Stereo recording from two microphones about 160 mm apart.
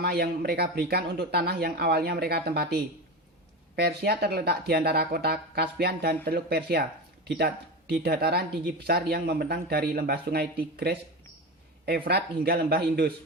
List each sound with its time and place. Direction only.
0.0 s speech: 80° right